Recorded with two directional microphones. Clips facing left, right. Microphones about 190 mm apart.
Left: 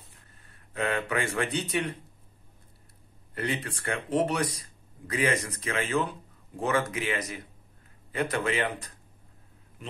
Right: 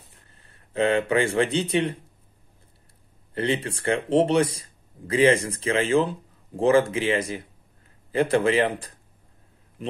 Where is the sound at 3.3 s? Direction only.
30° right (ahead or behind).